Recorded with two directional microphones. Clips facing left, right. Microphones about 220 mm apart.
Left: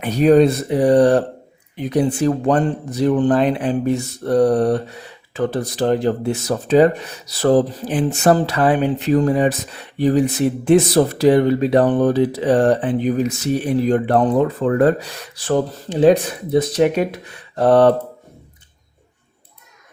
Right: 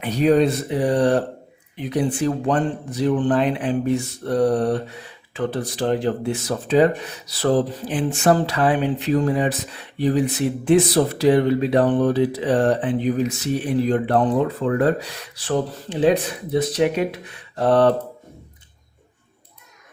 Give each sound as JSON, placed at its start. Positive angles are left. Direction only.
{"t": 0.0, "sound": "speech", "side_deg": 45}